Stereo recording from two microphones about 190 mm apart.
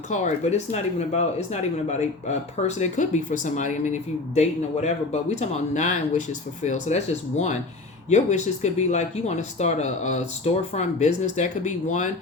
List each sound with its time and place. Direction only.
0.1 s speech: 40° left (ahead or behind)